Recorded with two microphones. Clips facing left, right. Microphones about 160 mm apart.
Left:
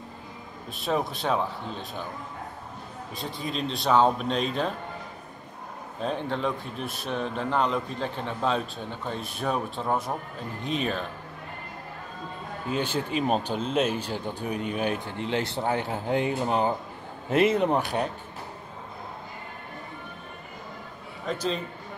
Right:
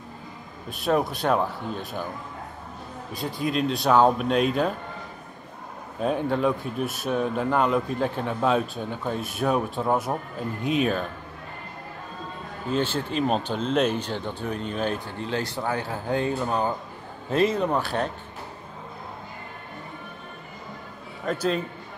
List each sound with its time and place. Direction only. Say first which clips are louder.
0.7 s speech: right 4 dB; centre (ahead or behind)
3.1 s speech: right 6 dB; centre (ahead or behind)
5.9 s speech: right 5 dB; 10° right (ahead or behind)
12.7 s speech: right 2 dB; 15° left (ahead or behind)
21.3 s speech: right 3 dB; centre (ahead or behind)